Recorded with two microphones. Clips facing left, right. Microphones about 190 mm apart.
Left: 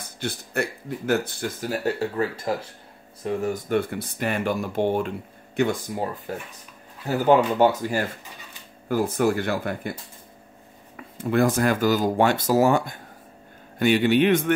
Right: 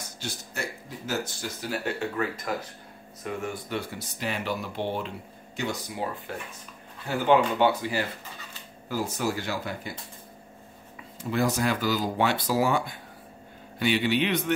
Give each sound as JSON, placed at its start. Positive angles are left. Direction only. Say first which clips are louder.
{"t": 0.0, "sound": "speech", "louder": "left 6 dB", "side_deg": 55}
{"t": 11.0, "sound": "speech", "louder": "left 6 dB", "side_deg": 55}